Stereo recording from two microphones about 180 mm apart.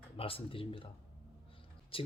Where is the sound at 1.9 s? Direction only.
30° left (ahead or behind).